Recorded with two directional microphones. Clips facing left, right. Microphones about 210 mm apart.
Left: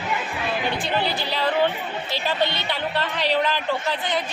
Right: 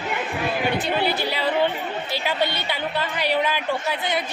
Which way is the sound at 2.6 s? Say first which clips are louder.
Even; 10° right (ahead or behind).